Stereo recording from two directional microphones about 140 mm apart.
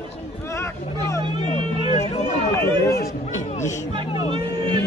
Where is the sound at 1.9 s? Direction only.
55° left (ahead or behind).